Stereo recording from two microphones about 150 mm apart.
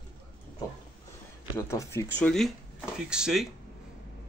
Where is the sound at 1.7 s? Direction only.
20° left (ahead or behind).